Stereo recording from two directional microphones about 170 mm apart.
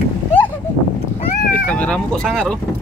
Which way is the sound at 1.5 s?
10° left (ahead or behind).